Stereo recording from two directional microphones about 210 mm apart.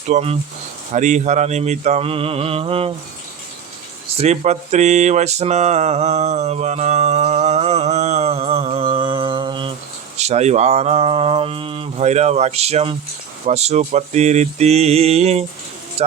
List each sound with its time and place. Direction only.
0.1 s speech: 30° right (ahead or behind)
0.9 s mantra: 35° right (ahead or behind)
4.2 s mantra: 30° right (ahead or behind)
16.0 s speech: 30° right (ahead or behind)